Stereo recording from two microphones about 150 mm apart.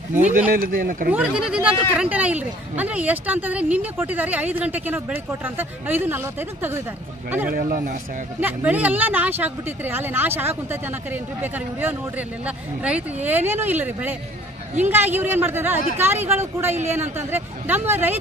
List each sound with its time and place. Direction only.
0.5 s speech: 70° right (ahead or behind)
1.1 s speech: 5° right (ahead or behind)
7.5 s speech: 60° right (ahead or behind)
8.4 s speech: 10° right (ahead or behind)